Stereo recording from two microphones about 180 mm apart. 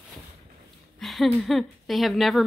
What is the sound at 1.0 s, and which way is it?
Speech, centre (ahead or behind).